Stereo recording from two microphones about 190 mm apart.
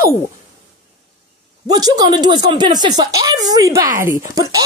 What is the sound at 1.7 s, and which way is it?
Speech, 20° right (ahead or behind).